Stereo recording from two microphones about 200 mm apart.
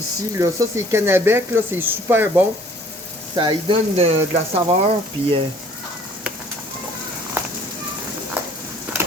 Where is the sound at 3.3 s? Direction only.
20° right (ahead or behind).